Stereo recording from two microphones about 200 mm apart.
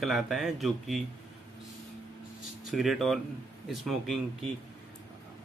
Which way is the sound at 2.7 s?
Centre (ahead or behind).